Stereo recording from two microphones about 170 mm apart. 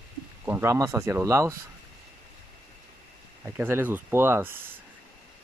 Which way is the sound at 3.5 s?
10° right (ahead or behind).